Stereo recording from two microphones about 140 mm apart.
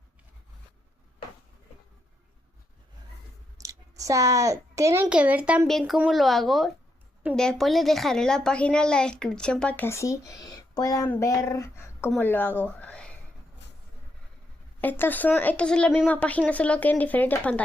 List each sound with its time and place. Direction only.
3.6 s speech: 25° right (ahead or behind)
5.0 s a woman's voice: 10° right (ahead or behind); by 13.1 s 10° left (ahead or behind)
14.8 s a woman's voice: 15° left (ahead or behind)